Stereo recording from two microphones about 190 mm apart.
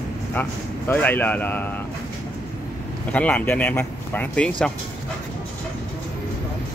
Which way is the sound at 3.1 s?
10° left (ahead or behind).